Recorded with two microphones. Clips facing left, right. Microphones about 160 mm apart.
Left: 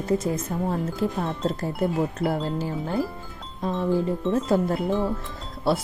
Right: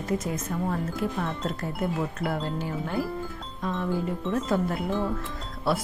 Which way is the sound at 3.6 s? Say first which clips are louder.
Left 5 dB; 30° left (ahead or behind).